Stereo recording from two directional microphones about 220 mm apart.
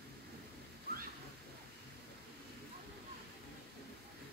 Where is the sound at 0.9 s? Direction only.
45° right (ahead or behind).